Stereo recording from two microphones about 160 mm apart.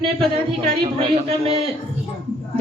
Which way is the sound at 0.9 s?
35° right (ahead or behind).